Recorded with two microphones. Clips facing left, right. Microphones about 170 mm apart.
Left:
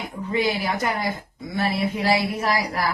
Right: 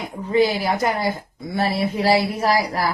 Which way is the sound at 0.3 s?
30° right (ahead or behind).